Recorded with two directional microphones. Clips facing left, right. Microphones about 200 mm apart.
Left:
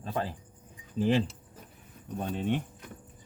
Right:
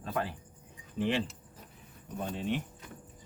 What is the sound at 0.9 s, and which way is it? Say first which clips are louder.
Speech: left 5 dB; 40° left (ahead or behind).